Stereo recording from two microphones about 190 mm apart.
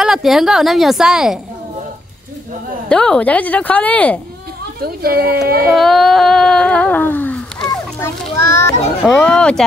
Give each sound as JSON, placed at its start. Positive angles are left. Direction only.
{"t": 0.0, "sound": "a woman's voice", "side_deg": 0}
{"t": 2.9, "sound": "speech", "side_deg": 5}
{"t": 4.8, "sound": "speech", "side_deg": -55}
{"t": 5.7, "sound": "a sound", "side_deg": 0}
{"t": 9.0, "sound": "a woman's voice", "side_deg": 5}